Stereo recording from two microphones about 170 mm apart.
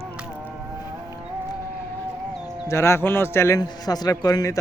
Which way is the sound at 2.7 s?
15° left (ahead or behind).